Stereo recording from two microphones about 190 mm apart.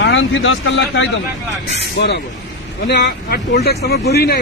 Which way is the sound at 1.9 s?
60° left (ahead or behind).